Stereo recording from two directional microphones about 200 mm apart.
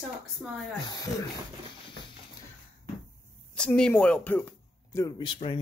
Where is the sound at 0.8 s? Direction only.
20° left (ahead or behind).